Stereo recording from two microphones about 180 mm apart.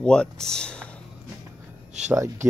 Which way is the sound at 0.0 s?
5° left (ahead or behind).